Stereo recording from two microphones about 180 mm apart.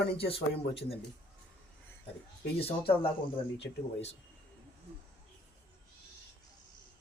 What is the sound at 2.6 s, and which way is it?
Speech, 30° left (ahead or behind).